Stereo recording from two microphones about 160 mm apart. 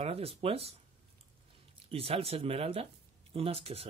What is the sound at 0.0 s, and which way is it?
Speech, 35° right (ahead or behind).